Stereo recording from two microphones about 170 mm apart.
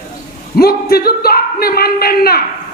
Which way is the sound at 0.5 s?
65° left (ahead or behind).